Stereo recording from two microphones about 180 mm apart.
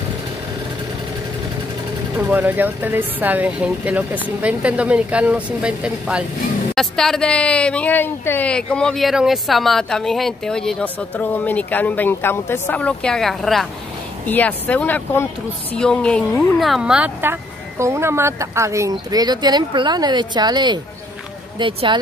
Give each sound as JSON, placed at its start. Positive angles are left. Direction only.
{"t": 2.1, "sound": "speech", "side_deg": -10}